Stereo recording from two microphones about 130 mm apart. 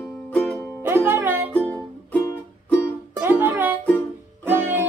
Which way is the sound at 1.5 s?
10° left (ahead or behind).